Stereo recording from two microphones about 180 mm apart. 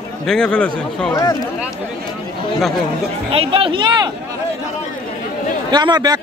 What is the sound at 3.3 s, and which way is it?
Speech, 30° right (ahead or behind).